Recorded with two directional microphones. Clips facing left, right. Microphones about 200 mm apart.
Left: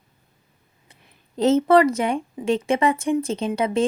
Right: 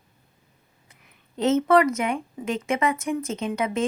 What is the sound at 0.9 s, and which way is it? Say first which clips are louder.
A woman's voice: left 4 dB; 35° left (ahead or behind).